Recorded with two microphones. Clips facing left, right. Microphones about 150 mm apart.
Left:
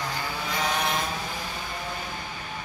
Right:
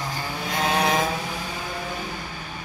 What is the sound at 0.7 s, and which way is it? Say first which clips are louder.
Vehicle: right 9 dB; 75° right (ahead or behind).